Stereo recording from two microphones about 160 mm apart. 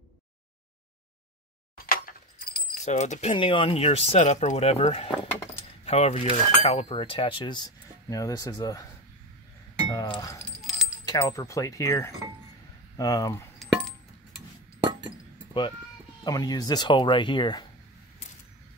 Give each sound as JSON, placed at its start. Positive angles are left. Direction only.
{"t": 2.7, "sound": "speech", "side_deg": 45}
{"t": 9.9, "sound": "speech", "side_deg": 25}
{"t": 10.4, "sound": "keys jangling", "side_deg": 0}
{"t": 11.1, "sound": "speech", "side_deg": 25}
{"t": 13.6, "sound": "a sound", "side_deg": 5}
{"t": 16.3, "sound": "speech", "side_deg": 25}